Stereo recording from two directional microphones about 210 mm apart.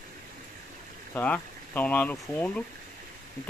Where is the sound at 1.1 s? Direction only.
10° left (ahead or behind).